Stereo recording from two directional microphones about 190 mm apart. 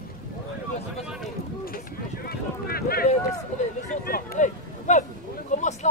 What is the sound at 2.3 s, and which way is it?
Boat, 55° left (ahead or behind).